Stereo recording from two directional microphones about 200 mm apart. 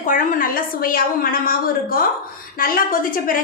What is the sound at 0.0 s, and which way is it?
A woman's voice, 40° left (ahead or behind).